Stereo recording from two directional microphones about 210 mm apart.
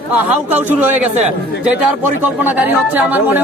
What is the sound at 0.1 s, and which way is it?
Speech, 10° right (ahead or behind).